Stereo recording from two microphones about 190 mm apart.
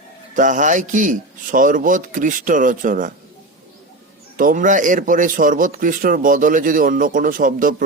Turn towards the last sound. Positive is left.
turn(degrees=-45)  # may be behind; listen again after turning